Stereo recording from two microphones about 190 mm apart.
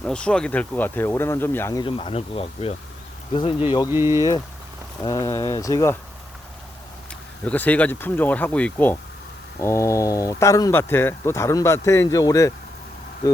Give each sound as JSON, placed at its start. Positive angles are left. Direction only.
{"t": 0.0, "sound": "speech", "side_deg": 5}
{"t": 1.8, "sound": "speech", "side_deg": 30}
{"t": 3.8, "sound": "speech", "side_deg": -15}
{"t": 5.0, "sound": "speech", "side_deg": 15}
{"t": 7.1, "sound": "speech", "side_deg": 10}